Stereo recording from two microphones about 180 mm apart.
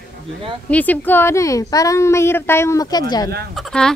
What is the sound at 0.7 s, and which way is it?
A woman's voice, 10° left (ahead or behind).